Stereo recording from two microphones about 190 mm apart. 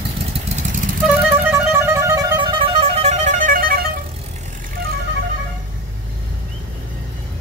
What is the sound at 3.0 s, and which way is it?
Music, 40° right (ahead or behind).